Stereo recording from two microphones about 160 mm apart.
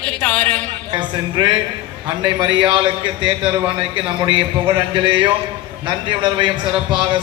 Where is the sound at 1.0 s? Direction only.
30° right (ahead or behind).